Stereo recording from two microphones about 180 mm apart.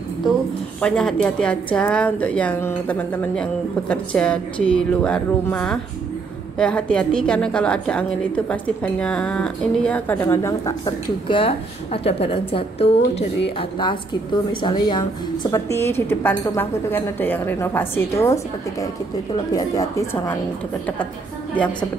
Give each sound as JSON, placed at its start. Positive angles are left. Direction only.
{"t": 0.7, "sound": "a woman's voice", "side_deg": 5}
{"t": 15.5, "sound": "a woman's voice", "side_deg": 15}